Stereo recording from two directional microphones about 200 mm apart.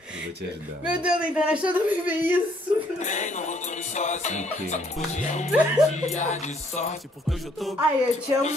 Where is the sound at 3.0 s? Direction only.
35° left (ahead or behind).